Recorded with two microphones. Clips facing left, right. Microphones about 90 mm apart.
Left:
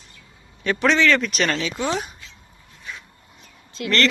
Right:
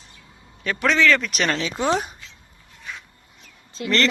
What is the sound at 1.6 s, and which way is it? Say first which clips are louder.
Speech: right 2 dB; 35° right (ahead or behind).